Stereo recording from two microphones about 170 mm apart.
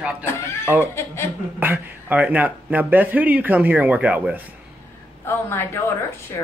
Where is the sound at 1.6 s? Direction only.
10° right (ahead or behind).